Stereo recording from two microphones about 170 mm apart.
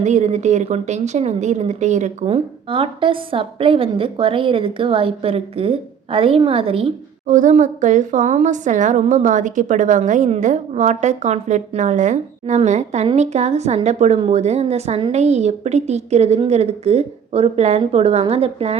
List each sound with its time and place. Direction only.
0.0 s a woman's voice: 45° right (ahead or behind)
7.3 s a woman's voice: 50° right (ahead or behind)